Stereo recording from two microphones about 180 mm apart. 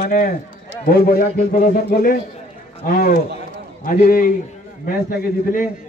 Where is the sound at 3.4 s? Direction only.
50° left (ahead or behind).